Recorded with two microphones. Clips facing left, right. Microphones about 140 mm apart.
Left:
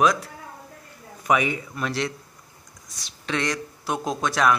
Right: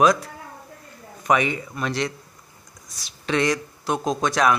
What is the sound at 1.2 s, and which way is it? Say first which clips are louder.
Speech: right 1 dB; 5° left (ahead or behind).